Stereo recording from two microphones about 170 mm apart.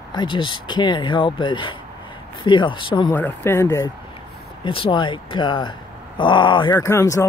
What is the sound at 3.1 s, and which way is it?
Speech, 10° left (ahead or behind).